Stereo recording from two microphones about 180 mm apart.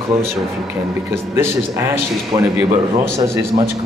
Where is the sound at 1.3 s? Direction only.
15° right (ahead or behind).